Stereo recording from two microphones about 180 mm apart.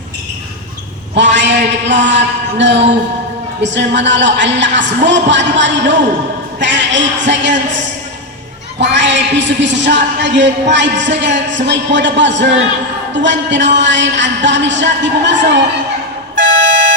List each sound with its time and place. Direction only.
1.1 s a man's voice: 80° right
8.8 s speech: 80° right